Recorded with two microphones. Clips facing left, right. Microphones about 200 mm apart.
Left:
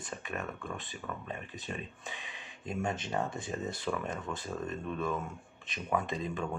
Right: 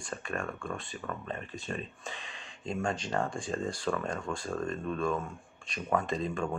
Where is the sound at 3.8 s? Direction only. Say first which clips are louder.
Right 3 dB; 10° left (ahead or behind).